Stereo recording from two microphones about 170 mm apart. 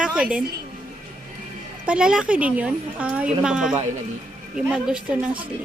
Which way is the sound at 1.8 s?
5° right (ahead or behind).